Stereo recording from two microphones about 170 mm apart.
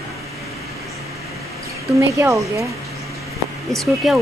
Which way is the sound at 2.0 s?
15° right (ahead or behind).